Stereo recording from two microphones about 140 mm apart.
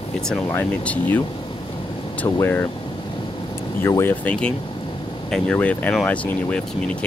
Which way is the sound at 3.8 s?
15° left (ahead or behind).